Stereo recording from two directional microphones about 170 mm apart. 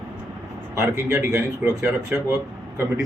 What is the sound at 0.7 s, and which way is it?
A man's voice, 15° right (ahead or behind).